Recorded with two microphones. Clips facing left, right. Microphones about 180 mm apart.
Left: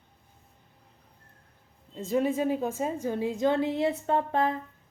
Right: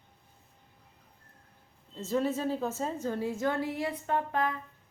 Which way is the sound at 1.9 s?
15° left (ahead or behind).